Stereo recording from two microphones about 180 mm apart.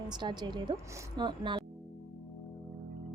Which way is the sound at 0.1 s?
25° right (ahead or behind).